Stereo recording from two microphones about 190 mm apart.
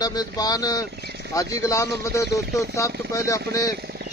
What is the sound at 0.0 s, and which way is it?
Speech, 20° left (ahead or behind).